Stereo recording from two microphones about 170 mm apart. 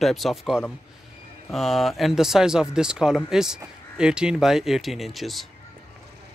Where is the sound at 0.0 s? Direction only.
Centre (ahead or behind).